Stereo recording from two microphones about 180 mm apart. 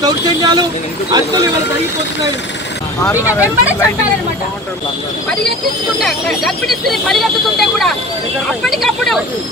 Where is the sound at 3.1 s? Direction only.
10° right (ahead or behind).